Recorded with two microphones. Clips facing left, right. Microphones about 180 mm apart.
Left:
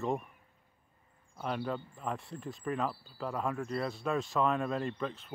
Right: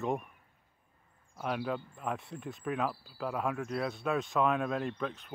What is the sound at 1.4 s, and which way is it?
Speech, 5° right (ahead or behind).